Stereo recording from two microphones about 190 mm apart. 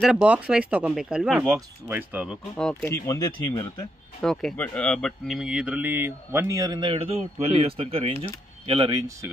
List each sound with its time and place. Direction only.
0.0 s speech: 5° right (ahead or behind)
2.5 s speech: 5° left (ahead or behind)
2.9 s speech: 20° left (ahead or behind)
4.2 s speech: centre (ahead or behind); by 9.3 s 20° right (ahead or behind)